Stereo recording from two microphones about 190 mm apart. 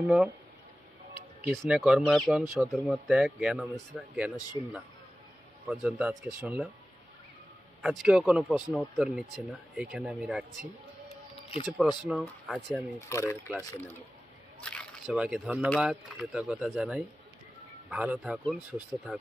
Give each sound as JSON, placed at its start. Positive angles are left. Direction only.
{"t": 0.0, "sound": "speech", "side_deg": -5}
{"t": 1.5, "sound": "speech", "side_deg": 0}
{"t": 4.6, "sound": "speech", "side_deg": 20}
{"t": 5.7, "sound": "speech", "side_deg": -5}
{"t": 7.8, "sound": "speech", "side_deg": 0}
{"t": 12.0, "sound": "speech", "side_deg": -5}
{"t": 13.1, "sound": "speech", "side_deg": 15}
{"t": 15.0, "sound": "speech", "side_deg": -5}